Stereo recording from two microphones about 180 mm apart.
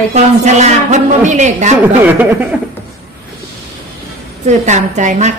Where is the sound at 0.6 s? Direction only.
40° right (ahead or behind).